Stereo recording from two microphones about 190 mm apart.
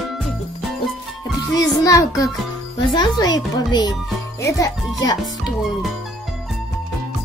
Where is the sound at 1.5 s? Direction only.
15° left (ahead or behind).